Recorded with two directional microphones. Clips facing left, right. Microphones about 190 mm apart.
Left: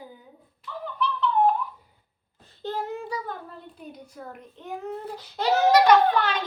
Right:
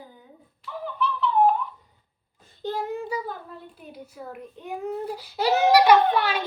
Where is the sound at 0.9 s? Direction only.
5° right (ahead or behind).